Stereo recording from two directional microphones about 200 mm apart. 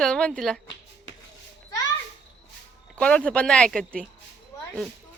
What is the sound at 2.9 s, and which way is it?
Speech, 5° left (ahead or behind).